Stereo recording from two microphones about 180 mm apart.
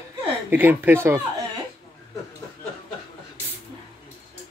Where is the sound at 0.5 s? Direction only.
10° right (ahead or behind).